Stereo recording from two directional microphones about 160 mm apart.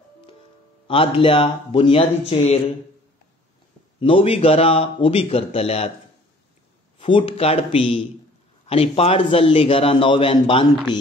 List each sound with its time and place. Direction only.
0.8 s a man's voice: 35° left (ahead or behind)
4.0 s a man's voice: 35° left (ahead or behind)
7.0 s a man's voice: 30° left (ahead or behind)